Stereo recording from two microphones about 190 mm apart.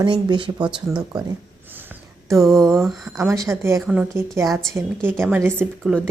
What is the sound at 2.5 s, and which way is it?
Speech, 15° right (ahead or behind).